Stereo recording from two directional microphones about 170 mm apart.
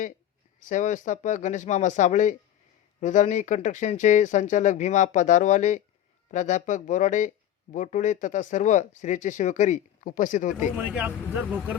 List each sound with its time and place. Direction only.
0.6 s speech: 45° left (ahead or behind)
10.8 s speech: 10° right (ahead or behind)